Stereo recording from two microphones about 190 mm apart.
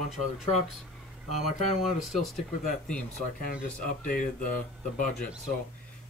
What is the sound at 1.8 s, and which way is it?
Speech, centre (ahead or behind).